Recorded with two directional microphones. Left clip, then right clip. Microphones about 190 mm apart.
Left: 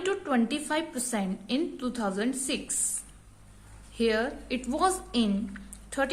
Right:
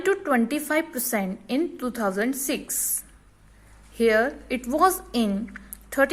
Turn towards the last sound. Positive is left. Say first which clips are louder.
# right 8 dB
turn(degrees=-30)  # may be behind; listen again after turning